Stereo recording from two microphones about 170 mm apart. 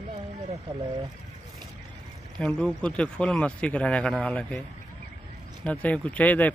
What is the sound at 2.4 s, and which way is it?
Speech, 5° left (ahead or behind).